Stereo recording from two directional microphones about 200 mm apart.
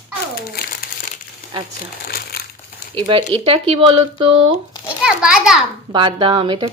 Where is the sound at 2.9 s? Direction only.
25° right (ahead or behind).